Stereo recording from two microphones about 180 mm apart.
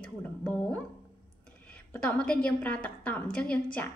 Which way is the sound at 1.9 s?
5° left (ahead or behind).